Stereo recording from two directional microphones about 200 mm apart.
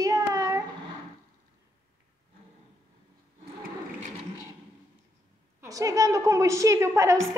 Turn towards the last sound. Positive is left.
turn(degrees=-15)  # may be behind; listen again after turning